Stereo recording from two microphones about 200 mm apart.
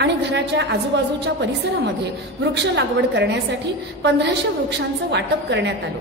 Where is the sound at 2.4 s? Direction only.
60° right (ahead or behind).